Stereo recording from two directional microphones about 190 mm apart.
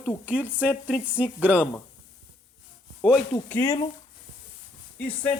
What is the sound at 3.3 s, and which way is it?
Speech, 15° left (ahead or behind).